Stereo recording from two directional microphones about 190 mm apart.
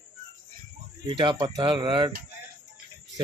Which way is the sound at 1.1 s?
25° right (ahead or behind).